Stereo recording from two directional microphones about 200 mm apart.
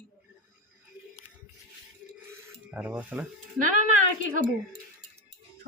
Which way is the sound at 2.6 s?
5° right (ahead or behind).